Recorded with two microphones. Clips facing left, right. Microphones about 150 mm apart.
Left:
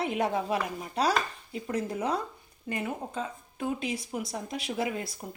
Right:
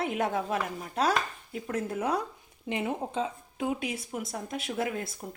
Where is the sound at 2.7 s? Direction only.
20° right (ahead or behind).